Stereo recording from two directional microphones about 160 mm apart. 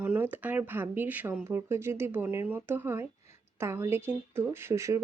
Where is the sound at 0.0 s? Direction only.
10° right (ahead or behind).